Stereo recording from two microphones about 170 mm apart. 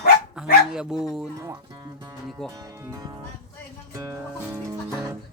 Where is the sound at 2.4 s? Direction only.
5° left (ahead or behind).